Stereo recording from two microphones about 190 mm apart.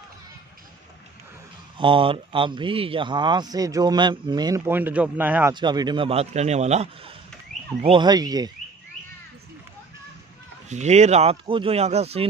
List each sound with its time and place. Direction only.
1.8 s speech: 25° right (ahead or behind); by 5.5 s 10° right (ahead or behind)
5.5 s speech: 25° right (ahead or behind)
7.5 s a sound: centre (ahead or behind)
7.8 s speech: 25° right (ahead or behind)
10.7 s speech: 35° right (ahead or behind)